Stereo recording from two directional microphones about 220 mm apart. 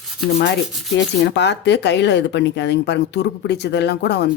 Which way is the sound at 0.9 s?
55° left (ahead or behind).